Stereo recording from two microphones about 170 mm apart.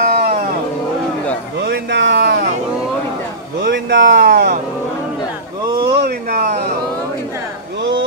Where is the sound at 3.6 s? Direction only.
90° right.